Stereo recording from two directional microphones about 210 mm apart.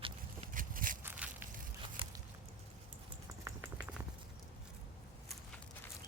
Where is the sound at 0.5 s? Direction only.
40° right (ahead or behind).